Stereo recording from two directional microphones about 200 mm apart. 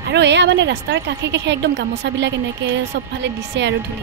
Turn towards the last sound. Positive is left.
turn(degrees=-60)  # may be behind; listen again after turning